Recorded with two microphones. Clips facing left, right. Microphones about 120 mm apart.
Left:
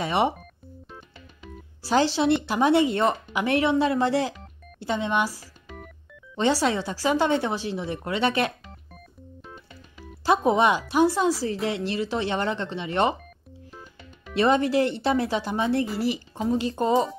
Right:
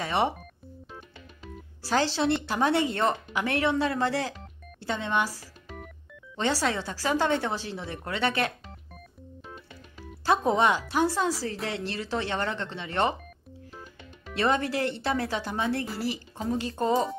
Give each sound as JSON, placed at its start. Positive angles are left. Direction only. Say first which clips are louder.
{"t": 0.0, "sound": "speech", "louder": "left 3 dB", "side_deg": 15}
{"t": 0.8, "sound": "music", "louder": "right 1 dB", "side_deg": 0}
{"t": 1.8, "sound": "speech", "louder": "left 4 dB", "side_deg": 15}
{"t": 10.2, "sound": "speech", "louder": "left 3 dB", "side_deg": 15}
{"t": 14.3, "sound": "speech", "louder": "left 5 dB", "side_deg": 20}